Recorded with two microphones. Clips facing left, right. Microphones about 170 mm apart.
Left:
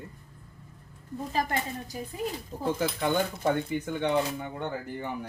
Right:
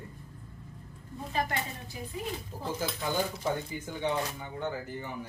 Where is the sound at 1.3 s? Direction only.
40° left (ahead or behind).